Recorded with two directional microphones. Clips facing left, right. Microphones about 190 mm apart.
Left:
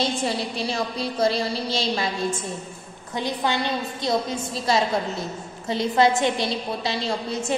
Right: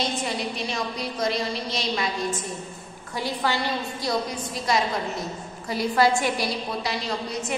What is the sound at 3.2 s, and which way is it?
A woman's voice, 20° left (ahead or behind).